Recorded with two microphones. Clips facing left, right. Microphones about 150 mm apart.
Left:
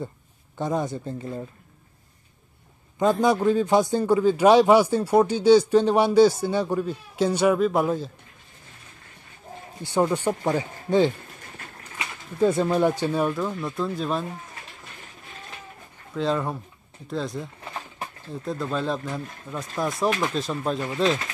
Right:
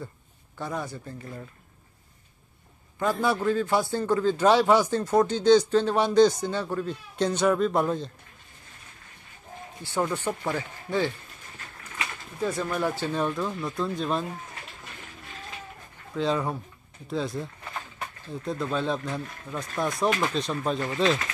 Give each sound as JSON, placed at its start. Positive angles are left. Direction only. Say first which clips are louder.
{"t": 0.6, "sound": "speech", "louder": "left 7 dB", "side_deg": 20}
{"t": 3.0, "sound": "a man's voice", "louder": "left 5 dB", "side_deg": 20}
{"t": 9.8, "sound": "a man's voice", "louder": "left 5 dB", "side_deg": 15}
{"t": 16.2, "sound": "speech", "louder": "left 1 dB", "side_deg": 0}